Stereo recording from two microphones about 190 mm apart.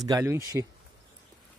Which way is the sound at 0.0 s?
15° right (ahead or behind).